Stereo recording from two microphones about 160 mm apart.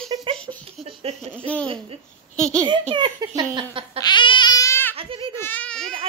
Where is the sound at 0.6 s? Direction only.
35° right (ahead or behind).